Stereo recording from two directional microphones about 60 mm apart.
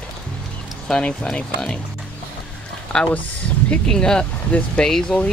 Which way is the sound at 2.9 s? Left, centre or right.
Centre.